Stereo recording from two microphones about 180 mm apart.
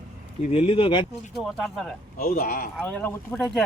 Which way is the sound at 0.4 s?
35° left (ahead or behind).